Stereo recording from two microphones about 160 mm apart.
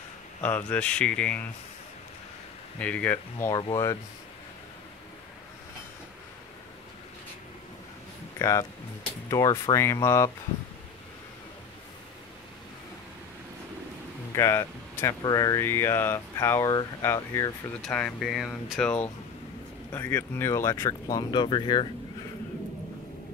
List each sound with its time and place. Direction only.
0.4 s speech: 10° left (ahead or behind)
2.8 s speech: 10° left (ahead or behind)
8.4 s speech: 20° left (ahead or behind)
14.3 s speech: 20° left (ahead or behind)
17.8 s speech: 5° left (ahead or behind)
21.2 s speech: 30° left (ahead or behind)